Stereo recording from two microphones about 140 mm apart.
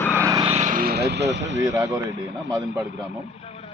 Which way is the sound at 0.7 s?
90° right.